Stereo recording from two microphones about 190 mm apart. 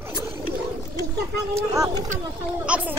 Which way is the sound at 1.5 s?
15° right (ahead or behind).